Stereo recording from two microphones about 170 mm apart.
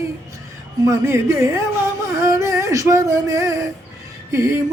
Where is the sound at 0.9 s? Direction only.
15° right (ahead or behind).